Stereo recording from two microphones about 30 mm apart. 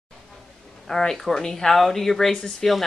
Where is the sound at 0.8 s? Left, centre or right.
Centre.